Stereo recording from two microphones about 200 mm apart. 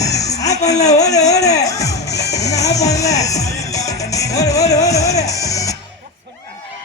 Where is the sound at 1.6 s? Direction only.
15° left (ahead or behind).